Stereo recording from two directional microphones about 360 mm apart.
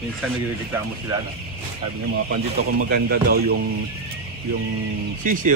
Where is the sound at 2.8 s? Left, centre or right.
Right.